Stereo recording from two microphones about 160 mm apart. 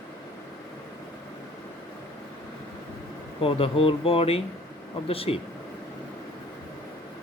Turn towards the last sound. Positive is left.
turn(degrees=35)  # may be behind; listen again after turning